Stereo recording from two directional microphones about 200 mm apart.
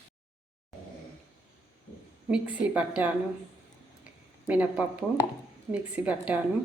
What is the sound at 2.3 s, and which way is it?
Speech, 5° right (ahead or behind).